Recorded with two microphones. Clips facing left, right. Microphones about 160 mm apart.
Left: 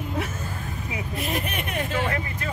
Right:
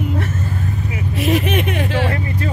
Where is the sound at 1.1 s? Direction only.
90° right.